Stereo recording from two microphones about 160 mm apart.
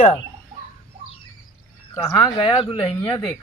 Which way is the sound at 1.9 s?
15° left (ahead or behind).